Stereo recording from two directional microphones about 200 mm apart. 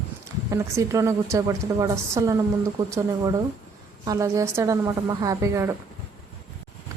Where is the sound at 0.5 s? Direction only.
15° right (ahead or behind).